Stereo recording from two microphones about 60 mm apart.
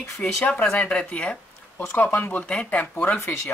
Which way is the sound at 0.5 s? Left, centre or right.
Left.